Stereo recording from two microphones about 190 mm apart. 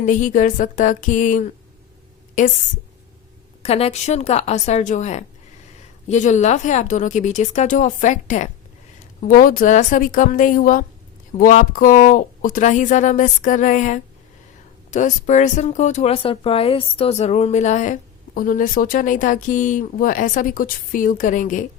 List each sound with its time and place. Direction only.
0.0 s speech: 40° left (ahead or behind)
3.6 s speech: 30° left (ahead or behind)